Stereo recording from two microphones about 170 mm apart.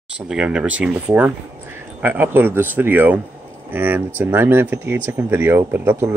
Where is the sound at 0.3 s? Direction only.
5° right (ahead or behind).